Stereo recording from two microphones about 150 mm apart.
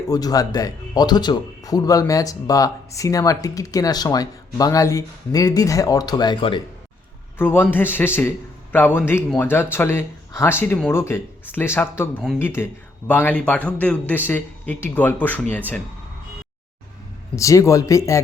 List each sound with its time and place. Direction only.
0.1 s speech: 25° left (ahead or behind)
7.3 s speech: 15° left (ahead or behind)
17.3 s speech: 20° left (ahead or behind)